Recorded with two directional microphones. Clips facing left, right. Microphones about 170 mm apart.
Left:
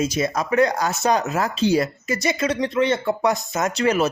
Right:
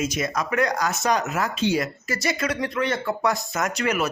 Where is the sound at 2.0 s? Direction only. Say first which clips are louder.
Left 4 dB; 20° left (ahead or behind).